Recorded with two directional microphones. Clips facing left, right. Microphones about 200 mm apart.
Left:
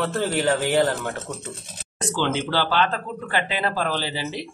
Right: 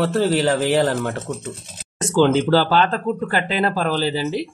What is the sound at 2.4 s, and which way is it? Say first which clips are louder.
Speech: right 6 dB; 40° right (ahead or behind).